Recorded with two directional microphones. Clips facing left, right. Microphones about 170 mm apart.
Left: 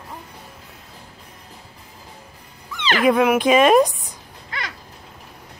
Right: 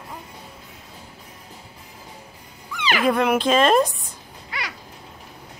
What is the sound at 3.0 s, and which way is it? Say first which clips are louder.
Speech: left 4 dB; 10° left (ahead or behind).